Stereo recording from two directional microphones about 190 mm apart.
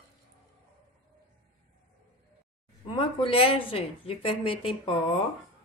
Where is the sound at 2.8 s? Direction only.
25° left (ahead or behind).